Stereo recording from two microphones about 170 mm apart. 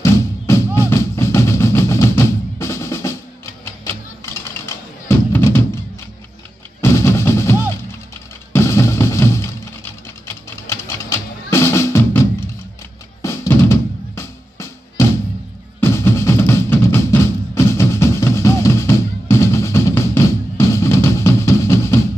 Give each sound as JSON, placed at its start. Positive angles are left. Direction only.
{"t": 0.0, "sound": "music", "side_deg": 15}
{"t": 6.8, "sound": "music", "side_deg": 15}
{"t": 8.5, "sound": "music", "side_deg": 15}
{"t": 10.8, "sound": "music", "side_deg": 15}
{"t": 13.2, "sound": "music", "side_deg": 15}